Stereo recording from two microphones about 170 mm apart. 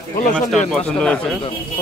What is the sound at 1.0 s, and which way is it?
Speech, 5° left (ahead or behind).